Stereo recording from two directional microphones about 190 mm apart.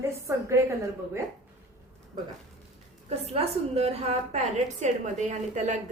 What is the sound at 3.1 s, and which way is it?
A woman's voice, 35° right (ahead or behind).